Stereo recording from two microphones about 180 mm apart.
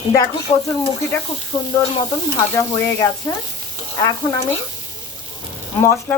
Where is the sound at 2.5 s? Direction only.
10° left (ahead or behind).